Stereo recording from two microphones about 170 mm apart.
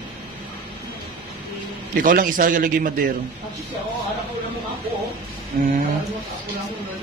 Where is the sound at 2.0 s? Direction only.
55° right (ahead or behind).